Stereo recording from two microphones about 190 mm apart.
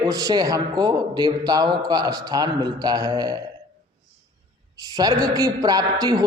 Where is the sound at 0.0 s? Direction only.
20° right (ahead or behind).